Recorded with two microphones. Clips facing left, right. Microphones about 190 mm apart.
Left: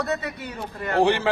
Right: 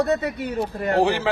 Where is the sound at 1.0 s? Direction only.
Centre (ahead or behind).